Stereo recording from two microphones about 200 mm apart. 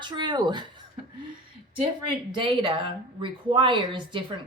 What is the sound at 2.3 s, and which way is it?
Speech, 25° right (ahead or behind).